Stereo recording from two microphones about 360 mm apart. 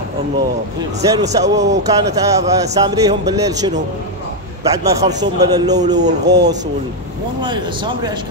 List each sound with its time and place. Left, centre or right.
1.0 s a man's voice: centre
1.6 s speech: right
1.9 s a man's voice: centre
5.9 s speech: right
7.4 s a man's voice: centre